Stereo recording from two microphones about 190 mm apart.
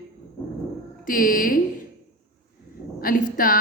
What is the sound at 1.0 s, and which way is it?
Speech, 45° left (ahead or behind).